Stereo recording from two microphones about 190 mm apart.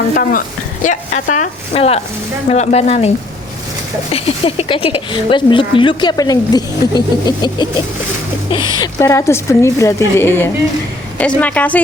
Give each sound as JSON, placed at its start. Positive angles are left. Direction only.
{"t": 0.1, "sound": "speech", "side_deg": 50}
{"t": 4.1, "sound": "a woman's voice", "side_deg": 30}